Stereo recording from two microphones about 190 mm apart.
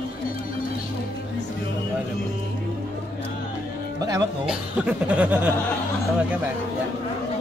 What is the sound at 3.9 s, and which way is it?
Speech, 20° right (ahead or behind).